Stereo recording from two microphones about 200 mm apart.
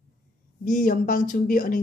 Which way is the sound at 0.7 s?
40° left (ahead or behind).